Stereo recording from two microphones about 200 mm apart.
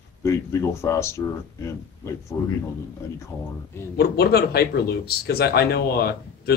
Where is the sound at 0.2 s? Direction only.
15° left (ahead or behind).